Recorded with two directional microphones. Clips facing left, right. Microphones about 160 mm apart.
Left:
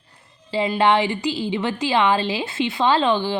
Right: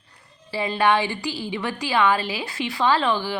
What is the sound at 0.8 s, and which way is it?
A woman's voice, 25° left (ahead or behind).